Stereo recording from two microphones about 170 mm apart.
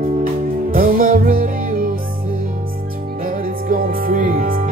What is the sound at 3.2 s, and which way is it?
Music, 55° right (ahead or behind).